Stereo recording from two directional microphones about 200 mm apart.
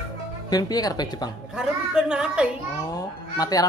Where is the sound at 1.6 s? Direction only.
5° right (ahead or behind).